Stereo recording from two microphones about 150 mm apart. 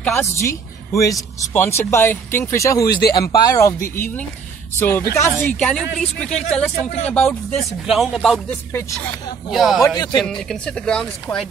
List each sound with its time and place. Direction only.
0.0 s speech: 15° left (ahead or behind)
5.6 s speech: 5° left (ahead or behind)
9.8 s speech: 25° left (ahead or behind)
10.2 s speech: 5° left (ahead or behind)